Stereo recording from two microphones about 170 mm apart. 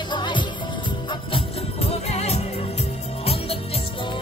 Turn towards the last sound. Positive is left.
turn(degrees=35)  # may be behind; listen again after turning